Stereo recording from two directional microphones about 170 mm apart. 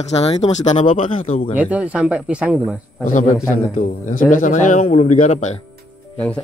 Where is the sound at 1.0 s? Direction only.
50° left (ahead or behind).